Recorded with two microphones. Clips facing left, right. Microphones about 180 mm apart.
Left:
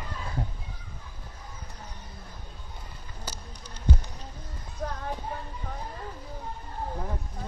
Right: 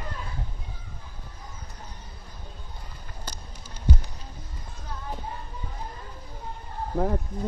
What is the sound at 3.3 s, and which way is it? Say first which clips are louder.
Music: left 1 dB; 5° left (ahead or behind).